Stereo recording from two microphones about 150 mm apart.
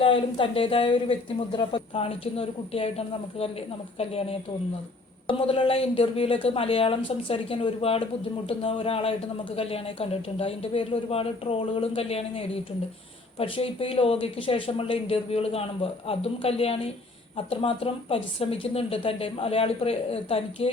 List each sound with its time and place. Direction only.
0.0 s speech: 35° left (ahead or behind)